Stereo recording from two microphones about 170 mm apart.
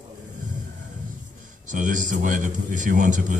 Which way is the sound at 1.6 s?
50° right (ahead or behind).